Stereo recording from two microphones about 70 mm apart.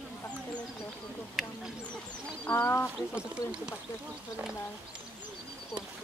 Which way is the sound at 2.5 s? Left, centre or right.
Left.